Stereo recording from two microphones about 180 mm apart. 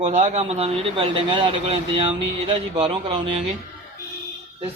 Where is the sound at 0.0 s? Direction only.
40° right (ahead or behind).